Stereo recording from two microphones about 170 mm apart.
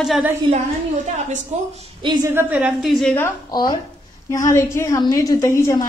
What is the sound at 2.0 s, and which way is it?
Speech, 25° right (ahead or behind).